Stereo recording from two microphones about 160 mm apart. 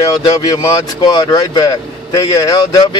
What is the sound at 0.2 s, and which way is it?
Speech, 25° left (ahead or behind).